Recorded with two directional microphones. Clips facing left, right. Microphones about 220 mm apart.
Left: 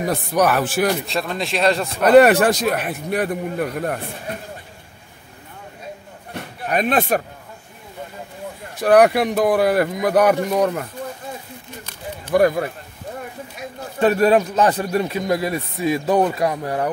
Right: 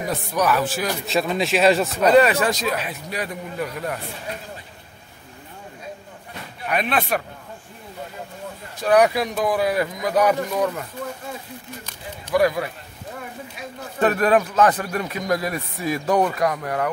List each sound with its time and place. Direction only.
0.1 s a man's voice: 55° left (ahead or behind)
1.0 s speech: centre (ahead or behind)
2.0 s a man's voice: 60° left (ahead or behind)
6.6 s speech: 45° left (ahead or behind)
8.8 s a man's voice: 55° left (ahead or behind)
10.6 s speech: 45° left (ahead or behind)
12.3 s speech: 50° left (ahead or behind)
14.0 s speech: 30° left (ahead or behind)